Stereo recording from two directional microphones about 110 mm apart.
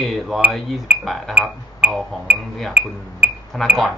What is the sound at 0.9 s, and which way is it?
Speech, 15° right (ahead or behind).